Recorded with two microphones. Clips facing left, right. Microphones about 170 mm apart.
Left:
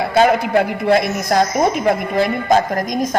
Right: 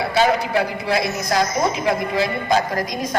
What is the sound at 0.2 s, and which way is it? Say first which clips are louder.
A woman's voice: left 5 dB; 50° left (ahead or behind).